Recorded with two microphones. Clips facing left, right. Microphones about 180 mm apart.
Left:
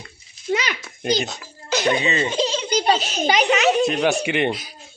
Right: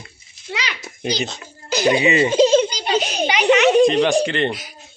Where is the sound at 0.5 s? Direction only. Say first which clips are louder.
Left 6 dB; 50° left (ahead or behind).